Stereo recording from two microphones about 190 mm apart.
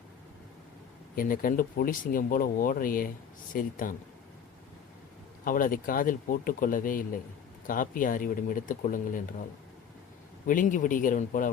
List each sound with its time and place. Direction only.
1.1 s speech: 50° left (ahead or behind)
5.5 s speech: 45° left (ahead or behind)
10.4 s speech: 45° left (ahead or behind)